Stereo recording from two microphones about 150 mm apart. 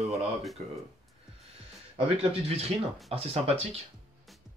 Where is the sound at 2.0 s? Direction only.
40° right (ahead or behind).